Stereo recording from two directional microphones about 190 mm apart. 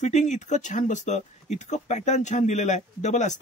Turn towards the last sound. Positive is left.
turn(degrees=40)  # may be behind; listen again after turning